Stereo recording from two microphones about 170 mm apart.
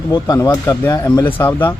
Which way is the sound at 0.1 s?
20° left (ahead or behind).